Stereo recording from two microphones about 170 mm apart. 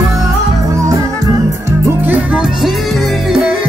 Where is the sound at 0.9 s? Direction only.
15° right (ahead or behind).